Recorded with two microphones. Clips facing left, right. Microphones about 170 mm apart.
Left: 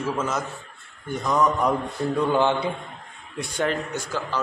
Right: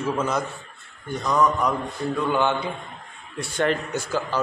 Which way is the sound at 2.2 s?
30° left (ahead or behind).